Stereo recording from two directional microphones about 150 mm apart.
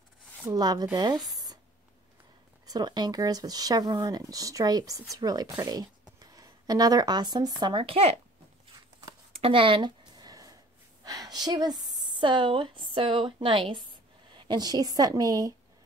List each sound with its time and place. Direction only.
0.5 s speech: 25° right (ahead or behind)
2.6 s speech: 25° right (ahead or behind)
9.3 s a sound: 35° right (ahead or behind)
11.1 s a woman's voice: 25° right (ahead or behind)